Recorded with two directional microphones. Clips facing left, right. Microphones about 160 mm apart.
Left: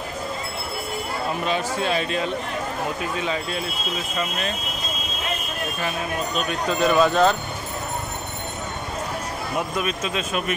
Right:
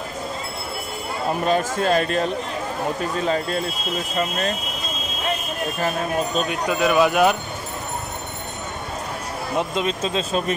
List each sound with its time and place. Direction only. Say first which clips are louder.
1.4 s speech: right 5 dB; 45° right (ahead or behind)
5.8 s speech: right 5 dB; 40° right (ahead or behind)
6.5 s speech: left 1 dB; 10° right (ahead or behind)
9.6 s speech: right 3 dB; 25° right (ahead or behind)